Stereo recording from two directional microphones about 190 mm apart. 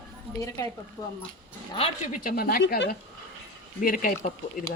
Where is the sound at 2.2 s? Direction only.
50° left (ahead or behind).